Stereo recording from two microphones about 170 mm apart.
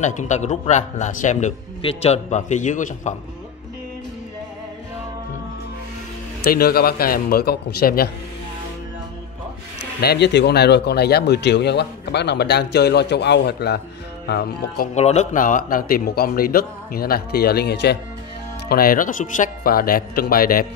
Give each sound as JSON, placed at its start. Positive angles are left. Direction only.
{"t": 0.0, "sound": "a man's voice", "side_deg": 45}
{"t": 6.4, "sound": "speech", "side_deg": 65}
{"t": 9.9, "sound": "speech", "side_deg": 80}
{"t": 15.0, "sound": "speech", "side_deg": 40}
{"t": 18.7, "sound": "speech", "side_deg": 60}